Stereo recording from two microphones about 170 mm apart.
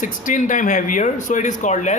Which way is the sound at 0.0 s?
50° left (ahead or behind).